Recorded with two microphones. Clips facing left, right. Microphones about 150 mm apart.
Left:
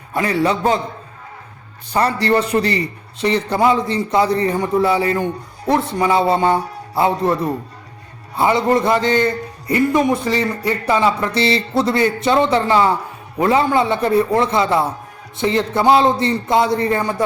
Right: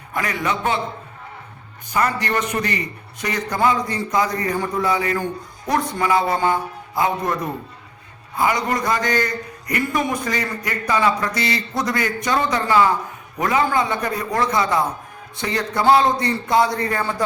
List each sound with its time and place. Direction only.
0.1 s a man's voice: 30° left (ahead or behind)
1.9 s a man's voice: 35° left (ahead or behind)
8.4 s a man's voice: 25° left (ahead or behind)